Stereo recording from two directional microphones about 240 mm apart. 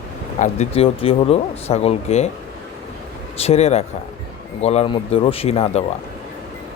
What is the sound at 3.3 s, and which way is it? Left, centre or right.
Speech, left.